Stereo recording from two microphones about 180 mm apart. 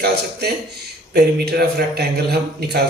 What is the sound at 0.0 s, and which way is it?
A man's voice, 60° right (ahead or behind).